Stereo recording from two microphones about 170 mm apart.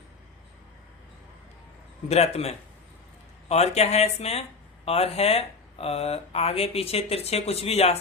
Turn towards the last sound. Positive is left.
turn(degrees=35)  # may be behind; listen again after turning